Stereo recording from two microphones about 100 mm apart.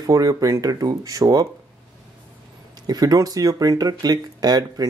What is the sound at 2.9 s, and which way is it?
Speech, 40° right (ahead or behind).